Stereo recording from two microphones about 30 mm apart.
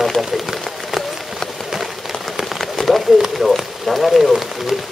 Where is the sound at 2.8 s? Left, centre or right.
Left.